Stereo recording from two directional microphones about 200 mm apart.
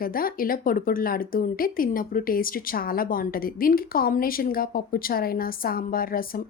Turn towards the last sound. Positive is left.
turn(degrees=45)  # may be behind; listen again after turning